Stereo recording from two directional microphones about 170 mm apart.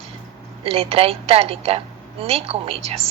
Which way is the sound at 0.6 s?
35° right (ahead or behind).